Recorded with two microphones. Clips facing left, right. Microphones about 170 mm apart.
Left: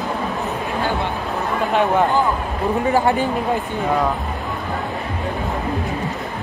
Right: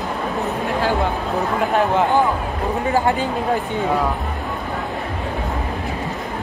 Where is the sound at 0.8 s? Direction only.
35° right (ahead or behind).